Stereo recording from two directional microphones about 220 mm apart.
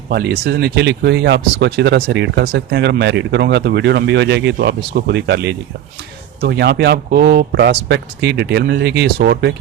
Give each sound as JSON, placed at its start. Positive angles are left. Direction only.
{"t": 0.1, "sound": "speech", "side_deg": -45}